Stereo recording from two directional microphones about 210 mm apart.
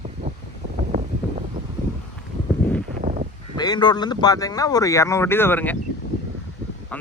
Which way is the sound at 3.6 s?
20° left (ahead or behind).